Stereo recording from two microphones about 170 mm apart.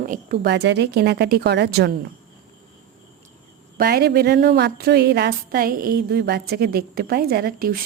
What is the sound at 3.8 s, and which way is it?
A woman's voice, 65° right (ahead or behind).